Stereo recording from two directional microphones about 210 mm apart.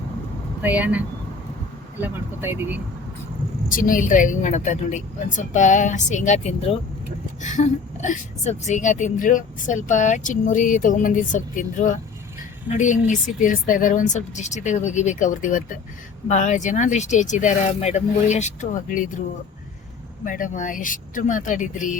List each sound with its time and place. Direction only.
0.6 s speech: 5° right (ahead or behind)
3.7 s a woman's voice: 40° left (ahead or behind)
20.2 s a woman's voice: 40° left (ahead or behind)